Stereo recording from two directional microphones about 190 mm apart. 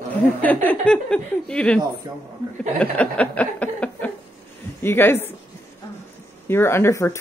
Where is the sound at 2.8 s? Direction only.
5° left (ahead or behind).